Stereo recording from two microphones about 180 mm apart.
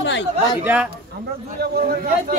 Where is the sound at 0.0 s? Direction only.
80° left.